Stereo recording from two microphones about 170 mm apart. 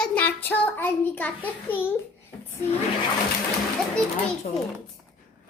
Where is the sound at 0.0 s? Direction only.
10° left (ahead or behind).